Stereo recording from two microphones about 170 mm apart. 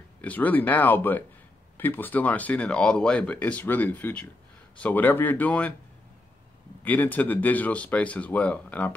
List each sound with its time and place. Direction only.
0.2 s speech: 10° left (ahead or behind)
6.8 s speech: 10° left (ahead or behind)